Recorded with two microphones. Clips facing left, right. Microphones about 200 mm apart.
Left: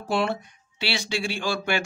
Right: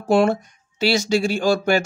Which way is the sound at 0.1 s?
45° right (ahead or behind).